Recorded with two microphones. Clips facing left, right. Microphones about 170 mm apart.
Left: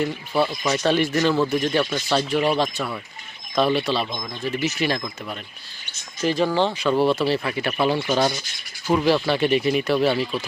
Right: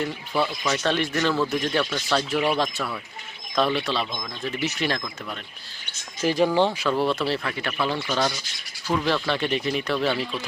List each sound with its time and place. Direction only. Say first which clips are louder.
0.0 s speech: left 3 dB; 5° left (ahead or behind)
1.8 s speech: left 3 dB; 20° left (ahead or behind)
2.1 s speech: left 2 dB; centre (ahead or behind)
6.2 s speech: even; 10° right (ahead or behind)
6.8 s speech: left 4 dB; 5° left (ahead or behind)
7.4 s speech: left 5 dB; 15° left (ahead or behind)
9.0 s speech: left 6 dB; 10° left (ahead or behind)